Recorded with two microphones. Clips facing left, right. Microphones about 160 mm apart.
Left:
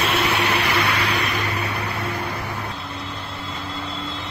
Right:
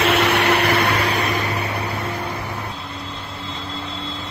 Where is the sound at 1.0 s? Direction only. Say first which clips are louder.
Right 3 dB; 45° right (ahead or behind).